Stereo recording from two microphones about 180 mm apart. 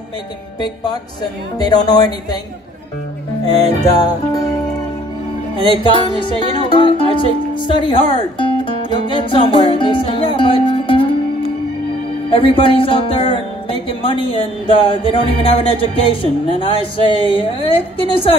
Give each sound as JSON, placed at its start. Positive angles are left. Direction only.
{"t": 1.6, "sound": "music", "side_deg": 20}
{"t": 3.9, "sound": "music", "side_deg": 20}
{"t": 5.7, "sound": "music", "side_deg": 25}
{"t": 12.3, "sound": "speech", "side_deg": 30}